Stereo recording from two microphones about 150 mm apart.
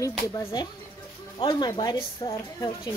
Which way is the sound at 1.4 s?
30° left (ahead or behind).